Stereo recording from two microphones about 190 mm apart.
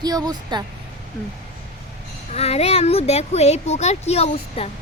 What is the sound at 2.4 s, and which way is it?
Speech, 30° left (ahead or behind).